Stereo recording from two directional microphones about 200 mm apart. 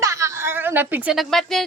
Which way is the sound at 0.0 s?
15° right (ahead or behind).